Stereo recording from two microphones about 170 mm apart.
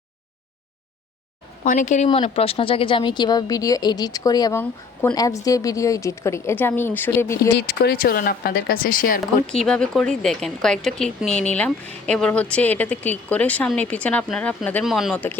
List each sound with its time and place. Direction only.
1.6 s speech: 50° left (ahead or behind)
2.2 s speech: 35° left (ahead or behind); by 7.5 s 15° left (ahead or behind)
7.5 s speech: 70° left (ahead or behind); by 9.1 s 55° left (ahead or behind)
9.5 s speech: 5° left (ahead or behind)